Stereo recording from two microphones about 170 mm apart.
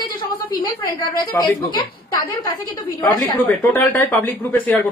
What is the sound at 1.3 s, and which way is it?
Speech, 15° left (ahead or behind).